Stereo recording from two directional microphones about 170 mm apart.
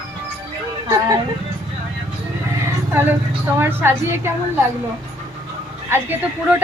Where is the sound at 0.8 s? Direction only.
20° right (ahead or behind).